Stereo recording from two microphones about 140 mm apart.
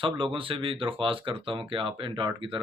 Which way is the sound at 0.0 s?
40° right (ahead or behind).